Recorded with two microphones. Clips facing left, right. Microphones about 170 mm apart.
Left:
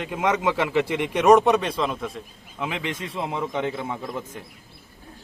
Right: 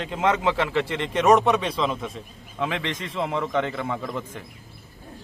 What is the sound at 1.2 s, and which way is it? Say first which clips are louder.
A man's voice: left 2 dB; centre (ahead or behind).